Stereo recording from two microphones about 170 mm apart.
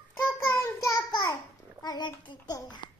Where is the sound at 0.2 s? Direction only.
15° left (ahead or behind).